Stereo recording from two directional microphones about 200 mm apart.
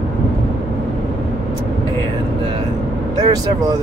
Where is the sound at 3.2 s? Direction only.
20° right (ahead or behind).